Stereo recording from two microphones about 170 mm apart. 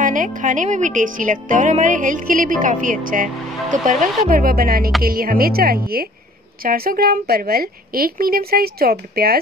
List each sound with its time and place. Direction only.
0.0 s speech: 50° right (ahead or behind)
3.9 s speech: centre (ahead or behind)
4.3 s a woman's voice: 55° right (ahead or behind)